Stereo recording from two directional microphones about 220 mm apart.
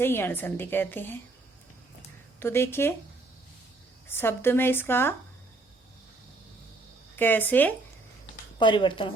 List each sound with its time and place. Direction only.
0.0 s a woman's voice: 10° left (ahead or behind)
2.4 s a woman's voice: 10° left (ahead or behind)
4.1 s a woman's voice: 10° left (ahead or behind)
7.2 s a woman's voice: 10° left (ahead or behind)
8.5 s speech: 20° left (ahead or behind)